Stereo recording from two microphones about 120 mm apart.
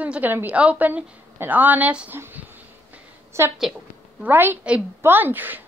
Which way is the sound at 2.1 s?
15° right (ahead or behind).